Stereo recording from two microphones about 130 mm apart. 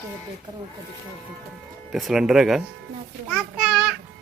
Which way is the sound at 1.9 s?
5° right (ahead or behind).